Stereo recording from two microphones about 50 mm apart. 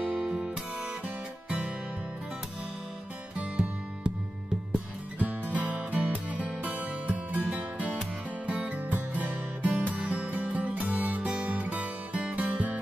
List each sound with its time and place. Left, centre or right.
0.0 s music: centre
3.3 s music: right
5.2 s music: right